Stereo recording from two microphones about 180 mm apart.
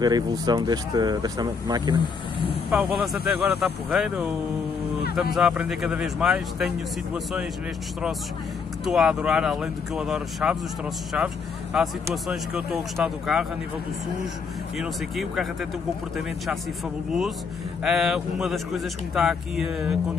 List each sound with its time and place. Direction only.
0.0 s speech: 20° right (ahead or behind)
2.7 s a man's voice: 5° right (ahead or behind)
5.3 s a man's voice: 5° right (ahead or behind)
8.8 s a man's voice: centre (ahead or behind)
14.8 s a man's voice: centre (ahead or behind)
17.8 s a man's voice: centre (ahead or behind)